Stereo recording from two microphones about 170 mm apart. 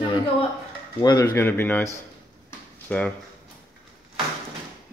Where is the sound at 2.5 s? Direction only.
10° left (ahead or behind).